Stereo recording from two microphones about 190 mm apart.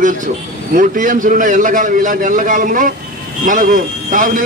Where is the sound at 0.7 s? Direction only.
45° right (ahead or behind).